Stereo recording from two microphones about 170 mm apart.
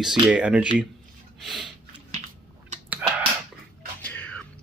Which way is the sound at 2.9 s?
10° right (ahead or behind).